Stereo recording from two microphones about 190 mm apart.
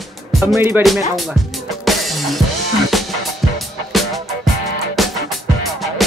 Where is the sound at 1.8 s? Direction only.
Centre (ahead or behind).